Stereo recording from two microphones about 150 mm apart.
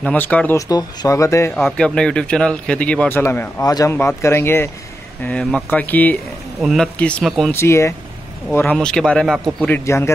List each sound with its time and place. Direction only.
0.0 s a man's voice: 10° left (ahead or behind)
0.6 s speech: 25° left (ahead or behind)
1.5 s a man's voice: centre (ahead or behind)
6.6 s a man's voice: centre (ahead or behind)
7.5 s a man's voice: 20° left (ahead or behind)
8.5 s a man's voice: 10° left (ahead or behind)
9.8 s speech: 20° left (ahead or behind)